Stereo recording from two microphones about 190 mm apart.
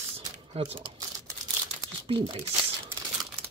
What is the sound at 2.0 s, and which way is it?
Speech, 25° right (ahead or behind).